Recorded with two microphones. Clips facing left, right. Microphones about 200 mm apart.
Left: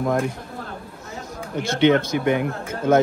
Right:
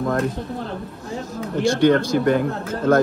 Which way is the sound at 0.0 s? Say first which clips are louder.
Even; 15° left (ahead or behind).